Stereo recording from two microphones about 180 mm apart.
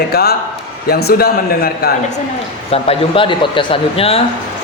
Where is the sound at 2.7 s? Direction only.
30° left (ahead or behind).